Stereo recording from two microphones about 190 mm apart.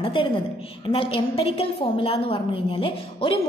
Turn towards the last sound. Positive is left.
turn(degrees=25)  # may be behind; listen again after turning